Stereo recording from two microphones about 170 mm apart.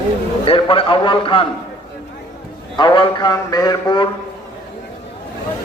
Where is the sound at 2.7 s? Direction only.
30° left (ahead or behind).